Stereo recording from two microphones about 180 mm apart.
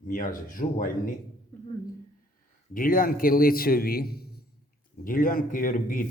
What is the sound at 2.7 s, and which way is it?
A man's voice, 50° left (ahead or behind).